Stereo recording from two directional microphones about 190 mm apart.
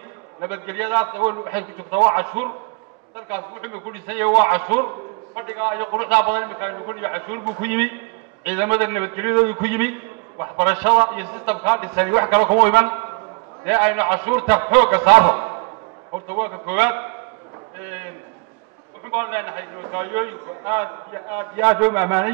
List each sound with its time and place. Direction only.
0.4 s a man's voice: 10° right (ahead or behind)
17.8 s a sound: 10° right (ahead or behind)
19.1 s a man's voice: 10° right (ahead or behind)